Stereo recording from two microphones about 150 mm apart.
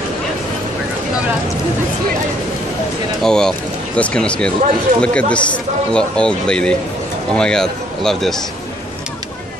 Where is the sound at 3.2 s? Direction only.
5° left (ahead or behind).